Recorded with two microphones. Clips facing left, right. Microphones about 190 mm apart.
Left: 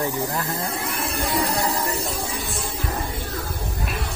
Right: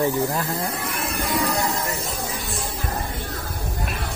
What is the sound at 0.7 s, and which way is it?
Music, 30° left (ahead or behind).